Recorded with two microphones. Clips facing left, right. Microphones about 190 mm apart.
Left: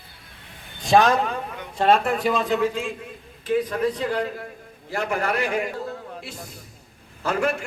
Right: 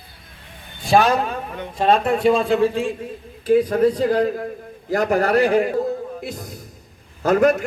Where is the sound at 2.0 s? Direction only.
25° right (ahead or behind).